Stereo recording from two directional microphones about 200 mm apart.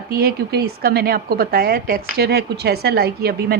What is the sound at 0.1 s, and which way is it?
A woman's voice, 50° right (ahead or behind).